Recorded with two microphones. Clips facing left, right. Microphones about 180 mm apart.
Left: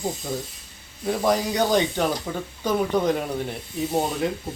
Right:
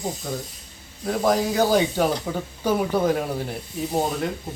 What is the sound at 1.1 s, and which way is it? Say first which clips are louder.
Cutlery: right 1 dB; centre (ahead or behind).